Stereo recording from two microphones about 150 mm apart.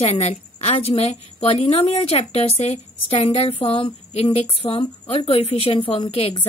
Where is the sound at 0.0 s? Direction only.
40° left (ahead or behind).